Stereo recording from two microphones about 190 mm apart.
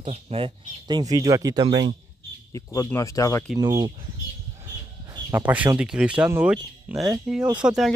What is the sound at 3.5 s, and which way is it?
Speech, 20° right (ahead or behind).